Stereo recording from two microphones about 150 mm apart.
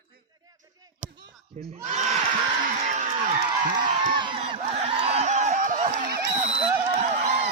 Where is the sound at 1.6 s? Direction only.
45° right (ahead or behind).